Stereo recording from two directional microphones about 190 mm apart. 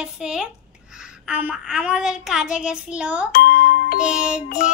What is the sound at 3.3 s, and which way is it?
Speech, 45° left (ahead or behind).